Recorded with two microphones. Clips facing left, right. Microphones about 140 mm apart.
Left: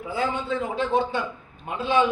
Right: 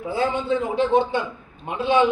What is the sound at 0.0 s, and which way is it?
A man's voice, 30° right (ahead or behind).